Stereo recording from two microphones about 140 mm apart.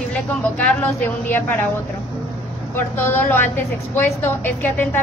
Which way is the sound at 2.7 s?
15° left (ahead or behind).